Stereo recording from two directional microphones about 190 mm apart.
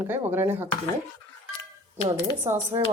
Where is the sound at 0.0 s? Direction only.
10° right (ahead or behind).